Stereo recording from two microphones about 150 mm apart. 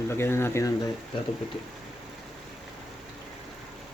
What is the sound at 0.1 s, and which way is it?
Speech, 15° left (ahead or behind).